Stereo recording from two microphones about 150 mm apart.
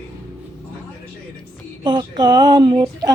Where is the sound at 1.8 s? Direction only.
30° right (ahead or behind).